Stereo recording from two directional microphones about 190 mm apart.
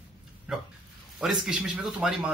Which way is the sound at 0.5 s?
5° right (ahead or behind).